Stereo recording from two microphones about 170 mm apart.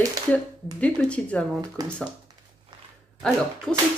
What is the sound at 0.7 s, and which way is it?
Speech, 5° left (ahead or behind).